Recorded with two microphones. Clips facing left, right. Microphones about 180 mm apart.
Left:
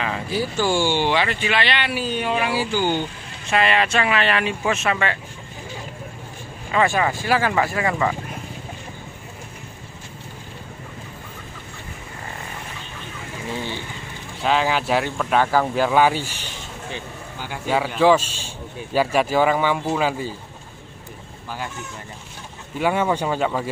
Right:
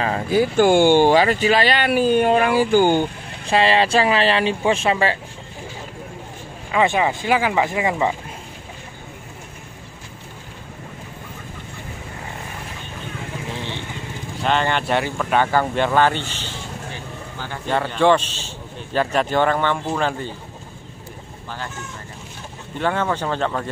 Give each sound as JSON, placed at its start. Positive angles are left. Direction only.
{"t": 0.0, "sound": "speech", "side_deg": -45}
{"t": 3.4, "sound": "speech", "side_deg": -30}
{"t": 6.7, "sound": "speech", "side_deg": -15}
{"t": 13.5, "sound": "vehicle", "side_deg": 0}
{"t": 14.4, "sound": "a man's voice", "side_deg": 0}
{"t": 22.8, "sound": "speech", "side_deg": 10}